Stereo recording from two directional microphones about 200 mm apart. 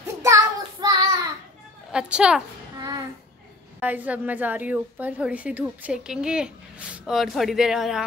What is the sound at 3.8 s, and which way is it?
A woman's voice, 10° right (ahead or behind).